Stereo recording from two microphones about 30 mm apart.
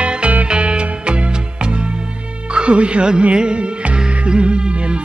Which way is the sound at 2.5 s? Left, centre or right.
Right.